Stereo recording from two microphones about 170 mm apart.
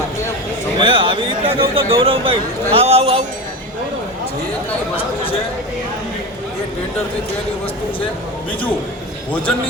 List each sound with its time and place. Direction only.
0.8 s a man's voice: 30° right (ahead or behind)